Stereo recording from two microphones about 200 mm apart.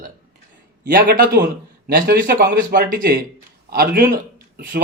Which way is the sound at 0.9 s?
45° right (ahead or behind).